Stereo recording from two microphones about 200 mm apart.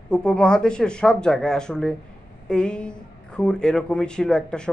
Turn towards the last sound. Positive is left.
turn(degrees=5)  # may be behind; listen again after turning